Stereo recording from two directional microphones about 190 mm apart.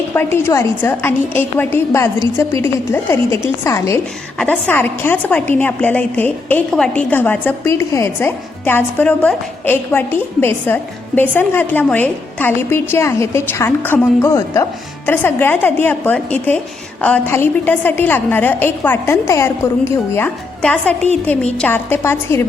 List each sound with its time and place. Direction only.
0.1 s a woman's voice: 10° left (ahead or behind)